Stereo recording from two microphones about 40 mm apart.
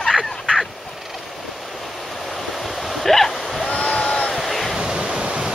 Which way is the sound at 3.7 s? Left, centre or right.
Left.